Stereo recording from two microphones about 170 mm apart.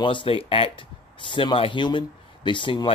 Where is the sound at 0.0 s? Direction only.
30° left (ahead or behind).